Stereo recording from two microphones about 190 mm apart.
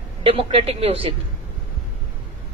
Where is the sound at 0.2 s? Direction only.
30° right (ahead or behind).